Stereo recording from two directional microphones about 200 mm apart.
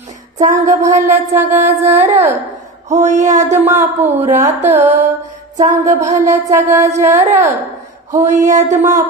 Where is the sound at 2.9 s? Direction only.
35° right (ahead or behind).